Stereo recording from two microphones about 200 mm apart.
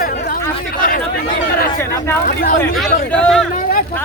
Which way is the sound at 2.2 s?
45° left (ahead or behind).